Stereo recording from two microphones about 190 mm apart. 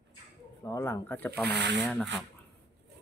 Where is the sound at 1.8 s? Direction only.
5° left (ahead or behind).